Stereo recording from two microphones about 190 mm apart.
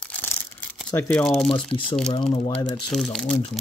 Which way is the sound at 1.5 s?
25° left (ahead or behind).